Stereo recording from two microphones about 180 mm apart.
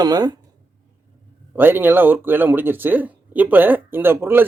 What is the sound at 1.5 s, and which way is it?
Speech, 10° right (ahead or behind).